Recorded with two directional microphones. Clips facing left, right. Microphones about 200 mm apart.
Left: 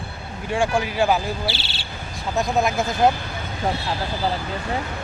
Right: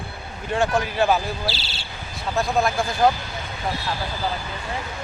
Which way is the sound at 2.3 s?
20° left (ahead or behind).